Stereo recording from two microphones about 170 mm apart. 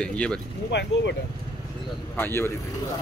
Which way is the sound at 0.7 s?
90° left.